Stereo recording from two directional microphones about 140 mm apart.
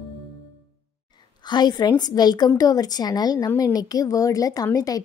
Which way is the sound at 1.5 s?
30° left (ahead or behind).